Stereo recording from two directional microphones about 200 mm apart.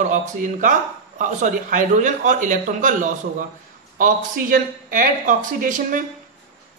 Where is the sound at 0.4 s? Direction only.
40° right (ahead or behind).